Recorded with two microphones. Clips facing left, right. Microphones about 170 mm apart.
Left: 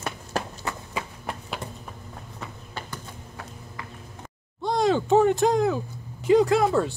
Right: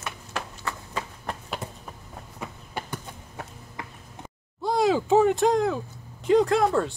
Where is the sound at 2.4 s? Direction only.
15° right (ahead or behind).